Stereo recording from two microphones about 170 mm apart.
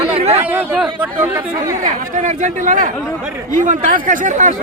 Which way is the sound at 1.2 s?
10° right (ahead or behind).